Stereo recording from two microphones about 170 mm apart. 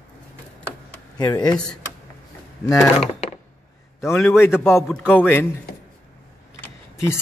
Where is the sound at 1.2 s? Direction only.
25° left (ahead or behind).